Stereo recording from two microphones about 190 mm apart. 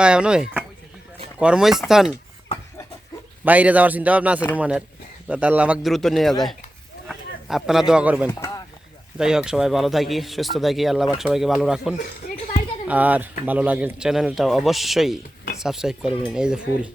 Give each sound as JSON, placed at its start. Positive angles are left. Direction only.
{"t": 0.0, "sound": "speech", "side_deg": -5}
{"t": 3.4, "sound": "a man's voice", "side_deg": -10}
{"t": 8.3, "sound": "a sound", "side_deg": 15}
{"t": 9.1, "sound": "speech", "side_deg": -5}
{"t": 12.2, "sound": "a sound", "side_deg": 50}
{"t": 12.9, "sound": "a man's voice", "side_deg": -10}